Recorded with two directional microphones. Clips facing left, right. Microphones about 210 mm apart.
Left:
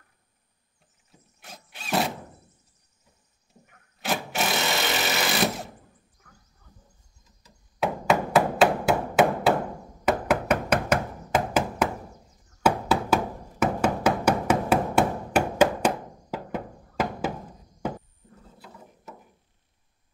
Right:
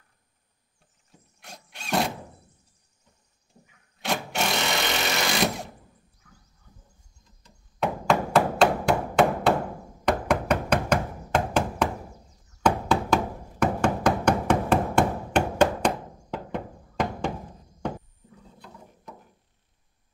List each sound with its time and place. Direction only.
1.1 s mechanisms: 5° left (ahead or behind)
3.6 s vehicle: 5° left (ahead or behind)
4.0 s sewing machine: centre (ahead or behind)
6.2 s horse: 55° left (ahead or behind)
7.2 s a sound: 5° left (ahead or behind)
12.6 s knock: 5° left (ahead or behind)
18.6 s ratchet: 5° left (ahead or behind)